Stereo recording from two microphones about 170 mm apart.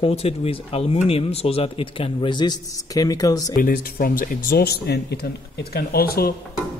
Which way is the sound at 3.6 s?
60° left (ahead or behind).